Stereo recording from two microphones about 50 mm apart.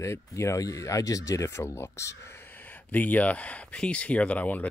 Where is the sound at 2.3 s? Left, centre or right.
Left.